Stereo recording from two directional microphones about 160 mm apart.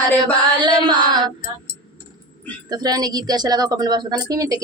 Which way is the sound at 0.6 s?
30° right (ahead or behind).